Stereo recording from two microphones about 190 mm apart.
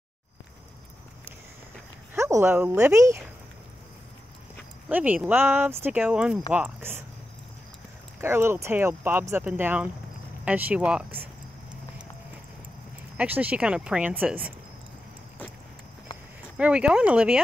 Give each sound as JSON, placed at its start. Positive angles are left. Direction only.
{"t": 2.1, "sound": "speech", "side_deg": -15}
{"t": 4.8, "sound": "speech", "side_deg": -10}
{"t": 8.2, "sound": "speech", "side_deg": -15}
{"t": 13.2, "sound": "speech", "side_deg": -10}
{"t": 16.5, "sound": "speech", "side_deg": -5}